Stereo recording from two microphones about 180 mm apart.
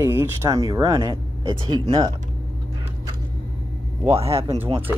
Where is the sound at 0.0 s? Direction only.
15° right (ahead or behind).